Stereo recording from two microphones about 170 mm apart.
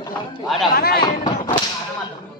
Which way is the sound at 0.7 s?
60° left (ahead or behind).